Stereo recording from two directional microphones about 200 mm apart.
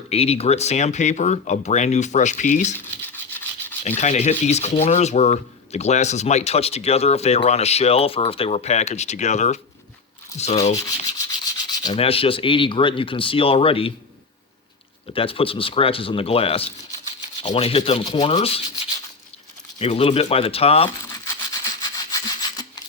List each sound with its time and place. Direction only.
0.1 s speech: 30° left (ahead or behind)
3.8 s speech: 35° left (ahead or behind)
10.8 s rub: 20° left (ahead or behind)
15.1 s speech: 25° left (ahead or behind)
19.8 s speech: 30° left (ahead or behind)
21.1 s rub: 20° left (ahead or behind)